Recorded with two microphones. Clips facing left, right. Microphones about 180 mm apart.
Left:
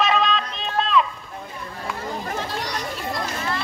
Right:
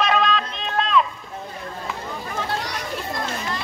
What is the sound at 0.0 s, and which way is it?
Music, centre (ahead or behind).